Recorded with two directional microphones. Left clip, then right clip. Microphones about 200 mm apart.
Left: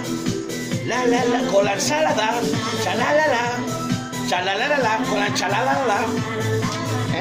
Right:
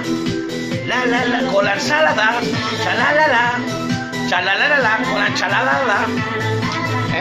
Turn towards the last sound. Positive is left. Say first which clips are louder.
# right 4 dB
turn(degrees=15)  # may be behind; listen again after turning